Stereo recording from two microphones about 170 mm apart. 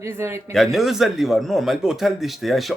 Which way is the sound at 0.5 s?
Centre (ahead or behind).